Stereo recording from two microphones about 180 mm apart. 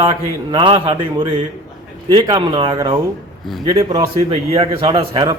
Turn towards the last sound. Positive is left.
turn(degrees=-30)  # may be behind; listen again after turning